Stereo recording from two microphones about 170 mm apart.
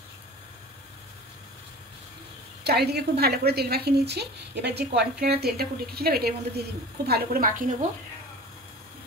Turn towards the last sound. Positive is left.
turn(degrees=-55)  # may be behind; listen again after turning